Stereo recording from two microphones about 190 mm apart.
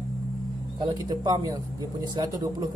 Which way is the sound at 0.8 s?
20° right (ahead or behind).